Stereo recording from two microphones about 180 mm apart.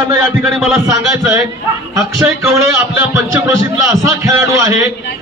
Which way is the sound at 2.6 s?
15° right (ahead or behind).